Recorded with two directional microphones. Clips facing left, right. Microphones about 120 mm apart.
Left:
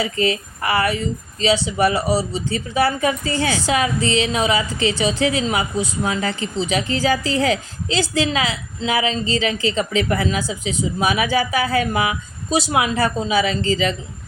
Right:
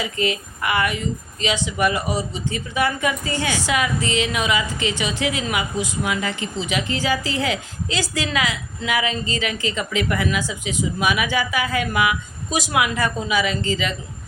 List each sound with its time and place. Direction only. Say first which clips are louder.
0.0 s a woman's voice: left 3 dB; 35° left (ahead or behind)